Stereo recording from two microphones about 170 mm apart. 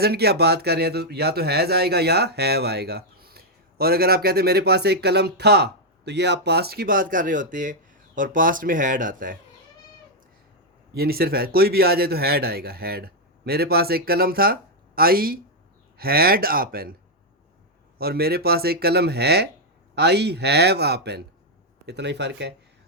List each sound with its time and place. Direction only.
0.0 s speech: 70° right (ahead or behind); by 9.4 s 55° right (ahead or behind)
10.9 s speech: 65° right (ahead or behind)
17.9 s speech: 65° right (ahead or behind); by 22.5 s 85° right